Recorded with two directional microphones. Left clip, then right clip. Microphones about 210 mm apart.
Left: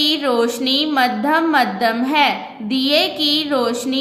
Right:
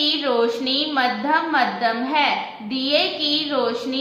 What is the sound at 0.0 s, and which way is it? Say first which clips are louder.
A woman's voice: left 3 dB; 50° left (ahead or behind).